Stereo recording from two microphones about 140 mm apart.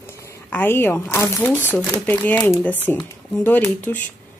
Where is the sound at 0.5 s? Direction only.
15° left (ahead or behind).